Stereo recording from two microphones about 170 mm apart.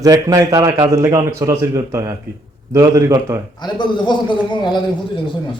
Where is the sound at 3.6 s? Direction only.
25° left (ahead or behind).